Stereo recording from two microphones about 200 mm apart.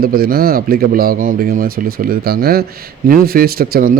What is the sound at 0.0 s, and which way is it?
A man's voice, 50° right (ahead or behind).